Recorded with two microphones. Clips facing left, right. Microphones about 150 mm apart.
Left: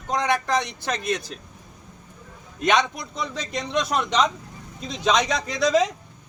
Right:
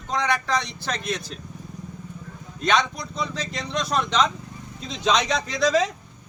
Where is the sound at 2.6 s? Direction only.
20° left (ahead or behind).